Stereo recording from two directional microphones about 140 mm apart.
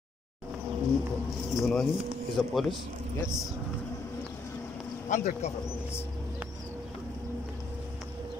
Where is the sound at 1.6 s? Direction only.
5° left (ahead or behind).